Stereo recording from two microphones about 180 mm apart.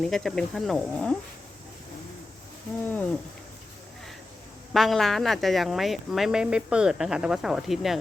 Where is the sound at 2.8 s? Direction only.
10° left (ahead or behind).